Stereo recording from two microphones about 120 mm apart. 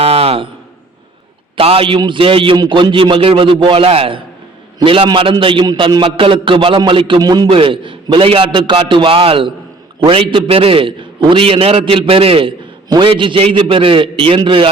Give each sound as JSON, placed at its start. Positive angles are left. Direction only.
{"t": 0.0, "sound": "a sound", "side_deg": -55}
{"t": 1.5, "sound": "a man's voice", "side_deg": -50}
{"t": 7.2, "sound": "a man's voice", "side_deg": -35}
{"t": 7.5, "sound": "a man's voice", "side_deg": -45}